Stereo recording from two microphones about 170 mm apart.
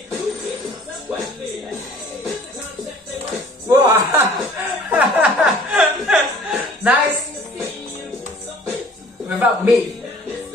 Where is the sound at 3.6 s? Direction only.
15° right (ahead or behind).